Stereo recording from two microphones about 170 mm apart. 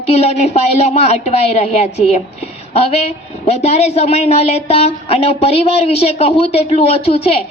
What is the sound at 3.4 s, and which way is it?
A woman's voice, 40° left (ahead or behind).